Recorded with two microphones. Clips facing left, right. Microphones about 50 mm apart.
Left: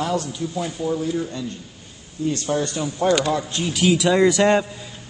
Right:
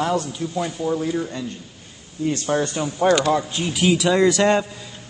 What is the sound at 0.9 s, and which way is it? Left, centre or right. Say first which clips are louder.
Speech: left 1 dB; right.